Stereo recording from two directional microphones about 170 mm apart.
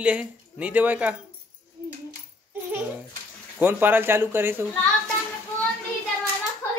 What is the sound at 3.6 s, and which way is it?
A woman's voice, 10° right (ahead or behind).